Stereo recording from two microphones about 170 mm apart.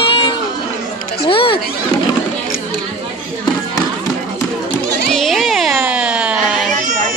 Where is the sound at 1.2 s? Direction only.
30° left (ahead or behind).